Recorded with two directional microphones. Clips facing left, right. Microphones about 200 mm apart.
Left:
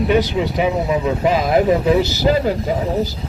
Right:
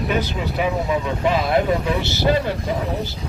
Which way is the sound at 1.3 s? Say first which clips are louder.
Left 3 dB; 40° left (ahead or behind).